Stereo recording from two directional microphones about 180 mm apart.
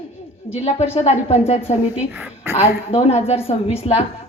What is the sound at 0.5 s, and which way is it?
A woman's voice, 40° left (ahead or behind).